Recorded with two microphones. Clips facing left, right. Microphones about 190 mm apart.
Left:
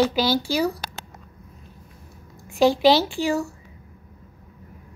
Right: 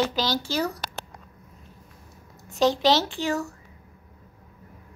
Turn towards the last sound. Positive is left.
turn(degrees=10)  # may be behind; listen again after turning